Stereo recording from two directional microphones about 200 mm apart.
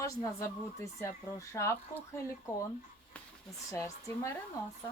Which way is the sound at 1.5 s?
15° left (ahead or behind).